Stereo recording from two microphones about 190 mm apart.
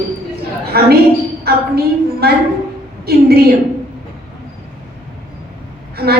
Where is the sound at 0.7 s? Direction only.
55° right (ahead or behind).